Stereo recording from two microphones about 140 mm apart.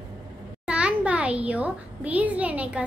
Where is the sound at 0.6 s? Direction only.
5° right (ahead or behind).